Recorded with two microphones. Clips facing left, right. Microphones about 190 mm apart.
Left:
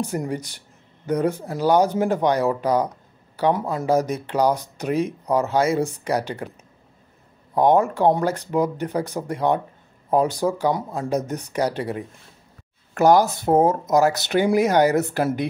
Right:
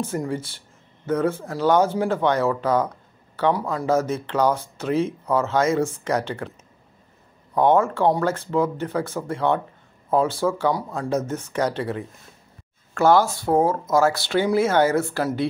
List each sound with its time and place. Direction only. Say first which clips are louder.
0.0 s speech: even; 15° left (ahead or behind)
7.5 s speech: left 1 dB; 15° left (ahead or behind)